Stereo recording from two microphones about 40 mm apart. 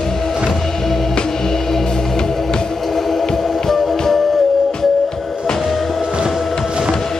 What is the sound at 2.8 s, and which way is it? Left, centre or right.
Music, centre.